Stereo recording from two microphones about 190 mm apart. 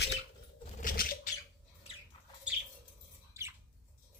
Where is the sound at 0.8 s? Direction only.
45° left (ahead or behind).